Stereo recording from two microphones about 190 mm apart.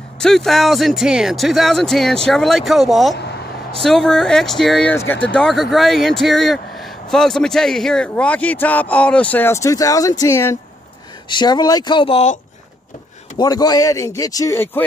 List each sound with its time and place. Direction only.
0.2 s speech: centre (ahead or behind)
3.2 s a sound: 65° left (ahead or behind)
3.8 s speech: centre (ahead or behind); by 12.4 s 30° left (ahead or behind)
13.4 s speech: 20° left (ahead or behind)